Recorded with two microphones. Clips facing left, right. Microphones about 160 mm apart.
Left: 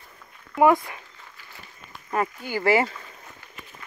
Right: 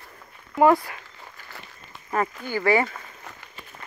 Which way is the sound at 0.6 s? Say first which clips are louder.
Even; 15° left (ahead or behind).